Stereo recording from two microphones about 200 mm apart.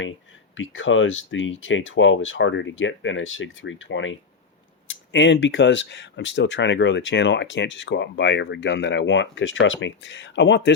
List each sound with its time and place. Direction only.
0.5 s speech: 75° left (ahead or behind)